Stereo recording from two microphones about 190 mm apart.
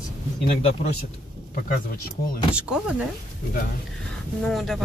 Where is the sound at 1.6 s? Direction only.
50° left (ahead or behind).